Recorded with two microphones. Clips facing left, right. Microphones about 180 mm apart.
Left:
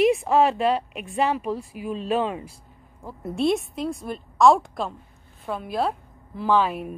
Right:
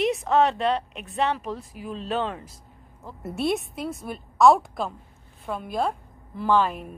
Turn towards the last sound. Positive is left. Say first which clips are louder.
# left 1 dB
turn(degrees=5)  # may be behind; listen again after turning